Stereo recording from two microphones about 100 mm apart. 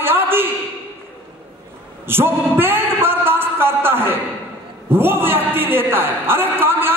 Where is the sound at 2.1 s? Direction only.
20° right (ahead or behind).